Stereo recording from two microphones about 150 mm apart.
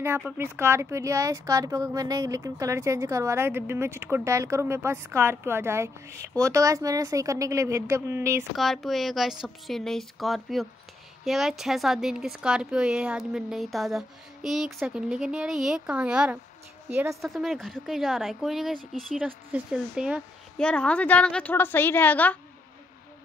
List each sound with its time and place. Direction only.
0.4 s speech: 15° right (ahead or behind)
8.5 s speech: centre (ahead or behind); by 17.3 s 15° right (ahead or behind)
17.3 s speech: centre (ahead or behind)
20.5 s a woman's voice: 10° left (ahead or behind)